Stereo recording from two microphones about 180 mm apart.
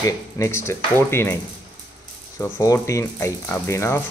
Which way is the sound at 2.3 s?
15° left (ahead or behind).